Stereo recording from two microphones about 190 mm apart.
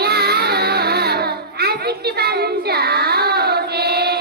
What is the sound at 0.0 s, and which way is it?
Music, 55° right (ahead or behind).